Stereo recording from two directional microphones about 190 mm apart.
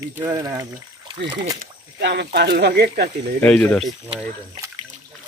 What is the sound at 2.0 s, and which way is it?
Speech, 65° right (ahead or behind).